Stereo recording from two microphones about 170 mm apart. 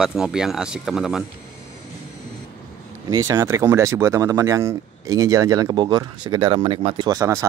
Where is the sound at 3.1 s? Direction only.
20° right (ahead or behind).